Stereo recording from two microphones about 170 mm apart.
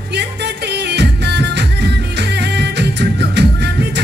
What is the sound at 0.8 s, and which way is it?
Music, 80° right.